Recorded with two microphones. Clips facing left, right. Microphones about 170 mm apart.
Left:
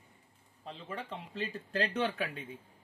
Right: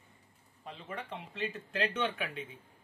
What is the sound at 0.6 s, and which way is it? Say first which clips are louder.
Speech: left 1 dB; 30° left (ahead or behind).